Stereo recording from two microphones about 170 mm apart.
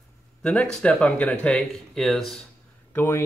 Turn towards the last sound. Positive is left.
turn(degrees=10)  # may be behind; listen again after turning